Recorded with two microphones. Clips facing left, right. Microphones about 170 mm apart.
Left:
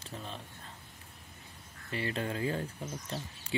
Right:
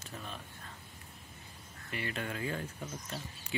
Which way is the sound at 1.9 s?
30° left (ahead or behind).